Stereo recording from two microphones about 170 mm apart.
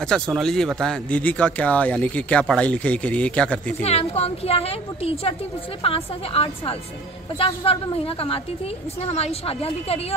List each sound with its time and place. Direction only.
0.1 s speech: 5° left (ahead or behind)
3.8 s a woman's voice: 35° left (ahead or behind)